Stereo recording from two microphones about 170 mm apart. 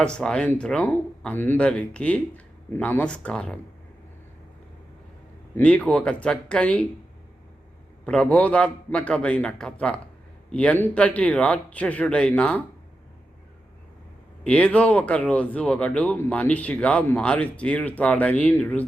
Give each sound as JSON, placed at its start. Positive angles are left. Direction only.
{"t": 0.0, "sound": "speech", "side_deg": 5}
{"t": 5.5, "sound": "speech", "side_deg": 10}
{"t": 8.0, "sound": "speech", "side_deg": 5}
{"t": 14.4, "sound": "speech", "side_deg": 5}